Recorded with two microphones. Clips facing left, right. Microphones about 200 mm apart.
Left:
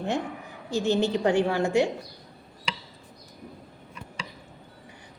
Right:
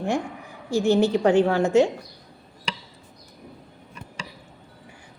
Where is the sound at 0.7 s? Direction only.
20° left (ahead or behind).